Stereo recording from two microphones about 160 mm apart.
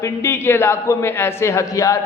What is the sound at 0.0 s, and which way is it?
A man's voice, 15° left (ahead or behind).